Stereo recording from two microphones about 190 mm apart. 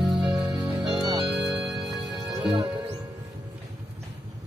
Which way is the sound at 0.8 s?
25° right (ahead or behind).